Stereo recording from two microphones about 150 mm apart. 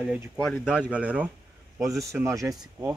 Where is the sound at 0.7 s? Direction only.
5° right (ahead or behind).